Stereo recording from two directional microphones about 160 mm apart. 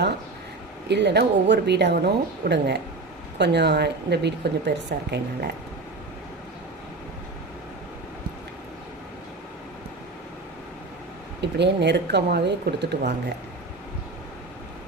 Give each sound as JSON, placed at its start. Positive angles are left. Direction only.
{"t": 0.8, "sound": "speech", "side_deg": -90}
{"t": 11.4, "sound": "speech", "side_deg": -90}